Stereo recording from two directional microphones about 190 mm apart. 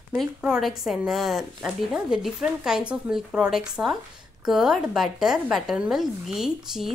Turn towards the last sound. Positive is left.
turn(degrees=0)  # may be behind; listen again after turning